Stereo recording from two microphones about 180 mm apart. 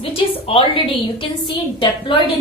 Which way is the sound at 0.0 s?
30° left (ahead or behind).